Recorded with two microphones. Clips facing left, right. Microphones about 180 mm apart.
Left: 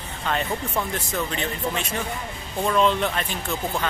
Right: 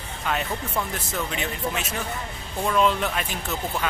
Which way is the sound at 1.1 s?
10° right (ahead or behind).